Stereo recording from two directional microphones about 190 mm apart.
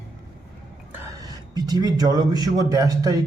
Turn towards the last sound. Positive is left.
turn(degrees=-20)  # may be behind; listen again after turning